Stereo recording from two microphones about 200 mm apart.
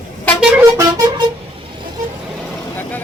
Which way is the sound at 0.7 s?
20° right (ahead or behind).